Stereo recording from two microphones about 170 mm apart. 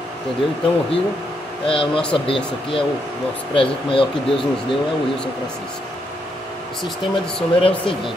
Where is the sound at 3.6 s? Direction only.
30° left (ahead or behind).